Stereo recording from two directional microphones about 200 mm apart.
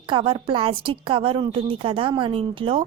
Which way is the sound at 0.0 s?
25° right (ahead or behind).